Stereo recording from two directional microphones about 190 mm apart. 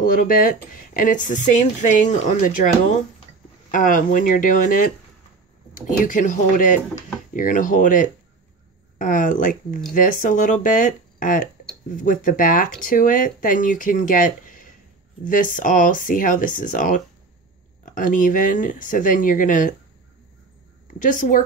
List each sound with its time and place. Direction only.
0.0 s speech: 50° left (ahead or behind)
3.7 s speech: 45° left (ahead or behind)
21.0 s speech: 45° left (ahead or behind)